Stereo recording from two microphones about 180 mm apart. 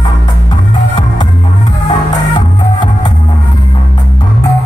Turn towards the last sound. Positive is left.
turn(degrees=25)  # may be behind; listen again after turning